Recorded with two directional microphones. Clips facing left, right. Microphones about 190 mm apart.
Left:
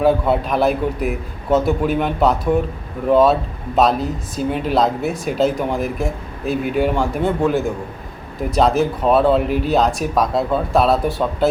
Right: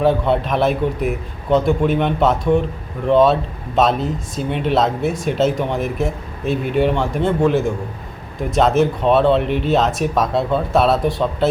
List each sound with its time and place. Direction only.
0.0 s speech: centre (ahead or behind)